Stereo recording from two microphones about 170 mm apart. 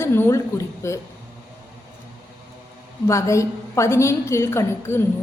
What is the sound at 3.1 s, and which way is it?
A woman's voice, 15° left (ahead or behind).